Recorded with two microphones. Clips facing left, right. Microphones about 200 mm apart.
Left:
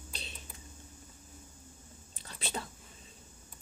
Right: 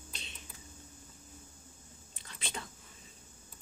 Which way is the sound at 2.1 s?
35° left (ahead or behind).